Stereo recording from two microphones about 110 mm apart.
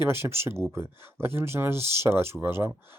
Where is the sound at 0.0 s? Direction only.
20° right (ahead or behind).